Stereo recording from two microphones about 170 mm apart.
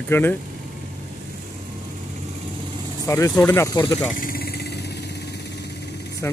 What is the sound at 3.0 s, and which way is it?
Speech, 20° left (ahead or behind).